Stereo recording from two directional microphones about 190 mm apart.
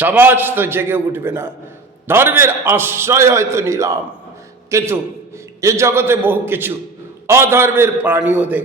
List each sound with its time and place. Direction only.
0.0 s a man's voice: 10° right (ahead or behind)